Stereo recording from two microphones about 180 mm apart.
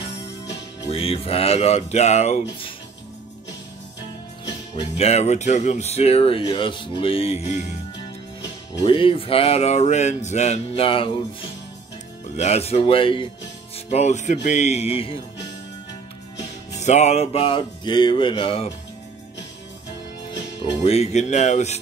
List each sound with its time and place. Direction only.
0.8 s speech: 30° left (ahead or behind)
4.9 s speech: 35° left (ahead or behind)
8.7 s speech: 30° left (ahead or behind)
12.4 s speech: 35° left (ahead or behind)
16.7 s speech: 40° left (ahead or behind)
20.8 s speech: 35° left (ahead or behind)